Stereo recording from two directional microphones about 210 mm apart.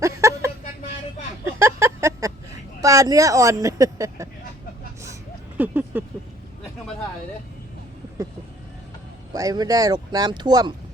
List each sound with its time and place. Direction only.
0.0 s a sound: 15° right (ahead or behind)
5.5 s speech: 10° right (ahead or behind)
9.3 s speech: 15° right (ahead or behind)